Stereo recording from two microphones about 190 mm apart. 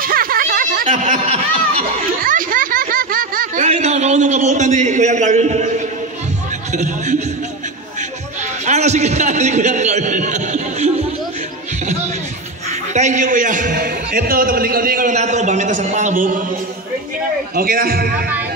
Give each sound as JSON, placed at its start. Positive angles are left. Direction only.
{"t": 0.0, "sound": "a sound", "side_deg": -50}
{"t": 2.2, "sound": "a man's voice", "side_deg": -45}
{"t": 8.6, "sound": "a man's voice", "side_deg": -35}
{"t": 12.9, "sound": "a man's voice", "side_deg": -40}
{"t": 17.6, "sound": "a man's voice", "side_deg": -50}